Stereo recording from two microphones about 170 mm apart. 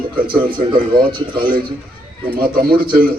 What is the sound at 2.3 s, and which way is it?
Speech, 60° right (ahead or behind).